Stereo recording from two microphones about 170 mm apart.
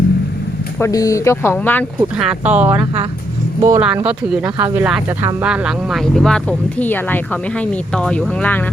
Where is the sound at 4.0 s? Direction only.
10° right (ahead or behind).